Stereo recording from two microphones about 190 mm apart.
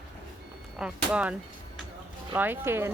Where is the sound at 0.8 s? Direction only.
5° right (ahead or behind).